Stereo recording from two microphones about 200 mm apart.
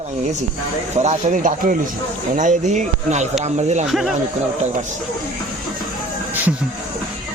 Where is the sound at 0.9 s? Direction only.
35° right (ahead or behind).